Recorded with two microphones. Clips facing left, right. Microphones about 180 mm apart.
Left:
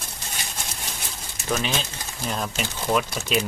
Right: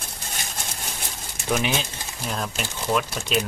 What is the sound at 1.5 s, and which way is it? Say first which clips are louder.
Speech: right 2 dB; 15° right (ahead or behind).